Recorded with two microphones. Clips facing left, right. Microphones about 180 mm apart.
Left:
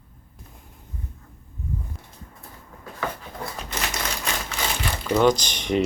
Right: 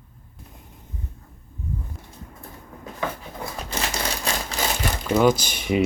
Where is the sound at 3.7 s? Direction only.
30° right (ahead or behind).